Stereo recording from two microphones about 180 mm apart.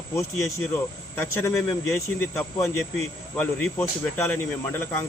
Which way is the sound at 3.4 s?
10° left (ahead or behind).